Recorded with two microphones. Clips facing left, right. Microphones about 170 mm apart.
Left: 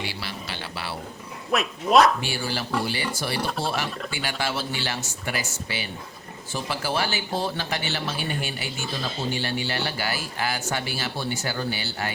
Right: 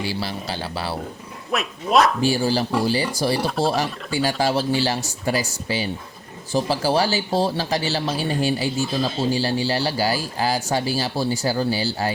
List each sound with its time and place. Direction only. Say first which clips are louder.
0.0 s a man's voice: right 7 dB; 40° right (ahead or behind)
1.5 s speech: even; centre (ahead or behind)
2.2 s a man's voice: right 9 dB; 40° right (ahead or behind)